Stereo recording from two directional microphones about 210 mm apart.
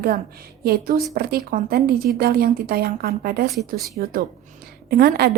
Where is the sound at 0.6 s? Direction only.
45° right (ahead or behind).